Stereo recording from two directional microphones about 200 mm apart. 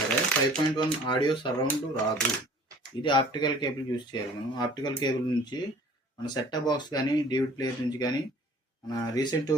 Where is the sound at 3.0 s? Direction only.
25° left (ahead or behind).